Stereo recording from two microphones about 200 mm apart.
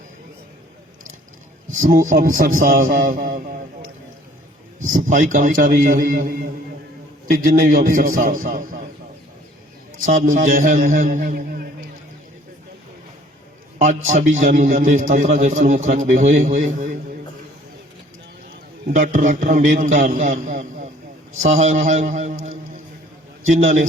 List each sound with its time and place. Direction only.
1.8 s a man's voice: 40° right (ahead or behind)
5.0 s a man's voice: 40° right (ahead or behind)
10.3 s a man's voice: 40° right (ahead or behind)
13.8 s a man's voice: 40° right (ahead or behind)
18.9 s a man's voice: 40° right (ahead or behind)
23.5 s a man's voice: 35° right (ahead or behind)